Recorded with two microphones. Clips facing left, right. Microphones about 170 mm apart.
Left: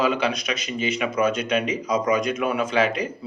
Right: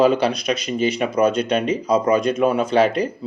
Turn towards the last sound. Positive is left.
turn(degrees=-35)  # may be behind; listen again after turning